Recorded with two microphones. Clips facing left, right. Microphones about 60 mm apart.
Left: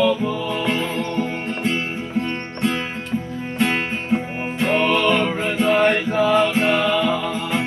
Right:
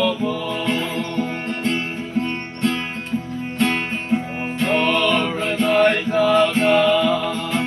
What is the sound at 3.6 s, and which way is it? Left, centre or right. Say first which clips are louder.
Music: even; centre.